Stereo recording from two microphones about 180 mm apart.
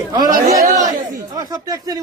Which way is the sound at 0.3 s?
55° right (ahead or behind).